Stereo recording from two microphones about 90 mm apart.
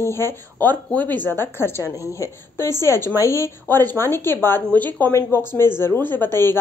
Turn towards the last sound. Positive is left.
turn(degrees=20)  # may be behind; listen again after turning